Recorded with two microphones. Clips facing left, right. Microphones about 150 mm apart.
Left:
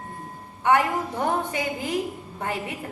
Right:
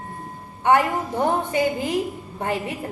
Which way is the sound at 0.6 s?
30° right (ahead or behind).